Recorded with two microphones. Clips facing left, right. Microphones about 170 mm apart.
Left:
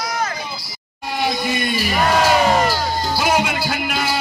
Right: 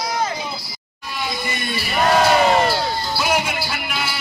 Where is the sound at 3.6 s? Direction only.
50° left (ahead or behind).